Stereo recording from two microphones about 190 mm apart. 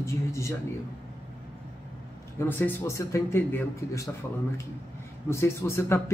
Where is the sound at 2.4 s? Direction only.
10° left (ahead or behind).